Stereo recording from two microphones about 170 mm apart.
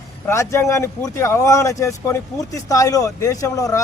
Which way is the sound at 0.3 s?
15° left (ahead or behind).